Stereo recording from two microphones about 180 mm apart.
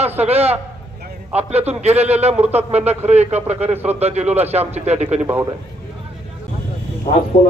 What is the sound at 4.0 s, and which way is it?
A man's voice, 35° right (ahead or behind).